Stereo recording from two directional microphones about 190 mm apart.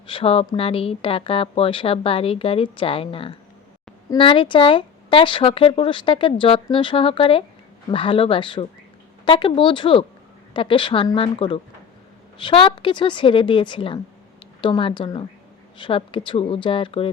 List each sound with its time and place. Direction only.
0.1 s speech: 30° left (ahead or behind)